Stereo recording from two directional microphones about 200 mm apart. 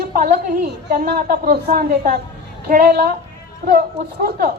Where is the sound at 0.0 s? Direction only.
50° right (ahead or behind).